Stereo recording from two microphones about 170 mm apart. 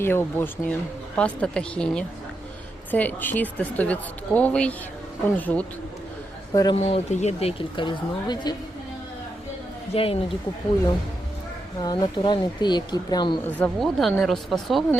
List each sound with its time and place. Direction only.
0.0 s speech: 15° left (ahead or behind)
6.5 s speech: 25° left (ahead or behind)
6.7 s speech: 40° left (ahead or behind)
9.9 s speech: 35° left (ahead or behind)
11.8 s speech: 25° left (ahead or behind)
13.6 s speech: centre (ahead or behind)